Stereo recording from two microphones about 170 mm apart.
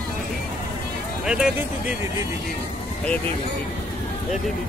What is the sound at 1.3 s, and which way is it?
Speech, 5° right (ahead or behind).